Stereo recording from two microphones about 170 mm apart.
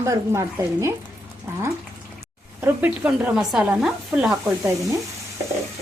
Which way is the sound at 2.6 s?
10° right (ahead or behind).